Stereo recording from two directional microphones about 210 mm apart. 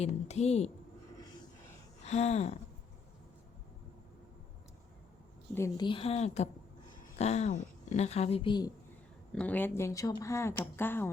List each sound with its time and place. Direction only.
0.0 s a woman's voice: 30° left (ahead or behind)
2.0 s a woman's voice: 30° left (ahead or behind)
5.5 s a woman's voice: 15° left (ahead or behind)
9.3 s speech: 5° left (ahead or behind)